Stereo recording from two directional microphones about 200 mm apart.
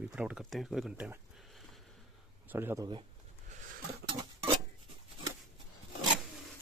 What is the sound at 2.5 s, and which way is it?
Speech, 10° right (ahead or behind).